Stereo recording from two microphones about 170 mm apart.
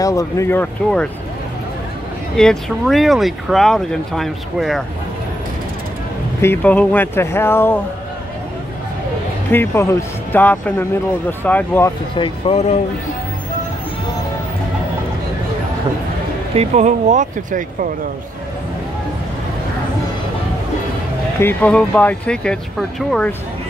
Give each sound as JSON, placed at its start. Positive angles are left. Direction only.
{"t": 0.0, "sound": "speech", "side_deg": 20}
{"t": 2.3, "sound": "speech", "side_deg": 0}
{"t": 6.4, "sound": "speech", "side_deg": 10}
{"t": 9.5, "sound": "speech", "side_deg": 15}
{"t": 12.2, "sound": "speech", "side_deg": 35}
{"t": 16.5, "sound": "speech", "side_deg": -45}
{"t": 21.4, "sound": "speech", "side_deg": 10}